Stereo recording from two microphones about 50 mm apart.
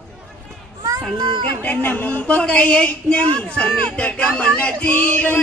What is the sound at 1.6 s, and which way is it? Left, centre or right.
Speech, left.